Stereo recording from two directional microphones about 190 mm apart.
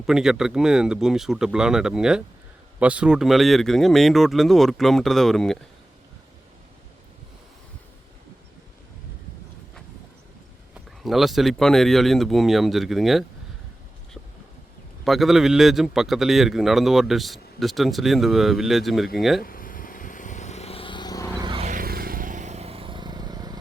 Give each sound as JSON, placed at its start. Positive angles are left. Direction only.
{"t": 0.0, "sound": "a man's voice", "side_deg": -5}
{"t": 11.0, "sound": "a man's voice", "side_deg": 0}
{"t": 15.0, "sound": "a man's voice", "side_deg": 0}
{"t": 19.4, "sound": "a sound", "side_deg": 50}
{"t": 21.3, "sound": "vehicle", "side_deg": -25}
{"t": 21.7, "sound": "vehicle", "side_deg": -50}